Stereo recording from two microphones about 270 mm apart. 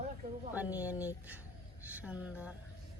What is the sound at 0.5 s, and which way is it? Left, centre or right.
Speech, centre.